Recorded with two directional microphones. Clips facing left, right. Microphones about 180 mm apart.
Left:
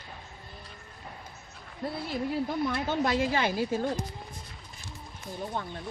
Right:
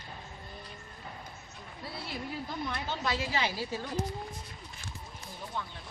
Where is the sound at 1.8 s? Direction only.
50° left (ahead or behind).